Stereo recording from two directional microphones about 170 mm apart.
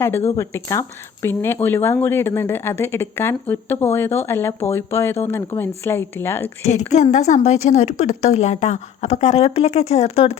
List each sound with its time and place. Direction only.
0.3 s speech: 20° left (ahead or behind)
6.7 s a woman's voice: 40° left (ahead or behind)